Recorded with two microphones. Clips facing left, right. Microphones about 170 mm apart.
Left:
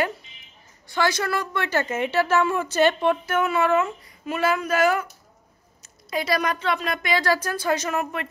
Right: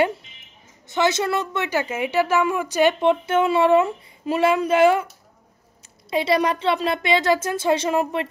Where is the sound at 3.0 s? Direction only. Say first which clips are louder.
Right 4 dB; 25° right (ahead or behind).